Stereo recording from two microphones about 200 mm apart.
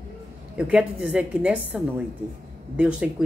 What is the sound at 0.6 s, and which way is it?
Speech, 5° right (ahead or behind).